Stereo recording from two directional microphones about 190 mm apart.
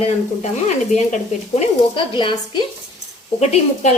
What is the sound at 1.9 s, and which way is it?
Speech, 25° left (ahead or behind).